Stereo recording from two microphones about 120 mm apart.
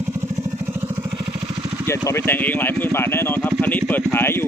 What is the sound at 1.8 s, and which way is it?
Speech, 20° left (ahead or behind).